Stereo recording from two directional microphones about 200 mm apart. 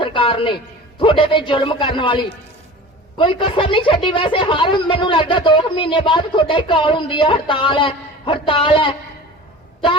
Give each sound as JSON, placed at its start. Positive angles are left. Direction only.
{"t": 0.0, "sound": "music", "side_deg": 25}
{"t": 0.9, "sound": "a woman's voice", "side_deg": 25}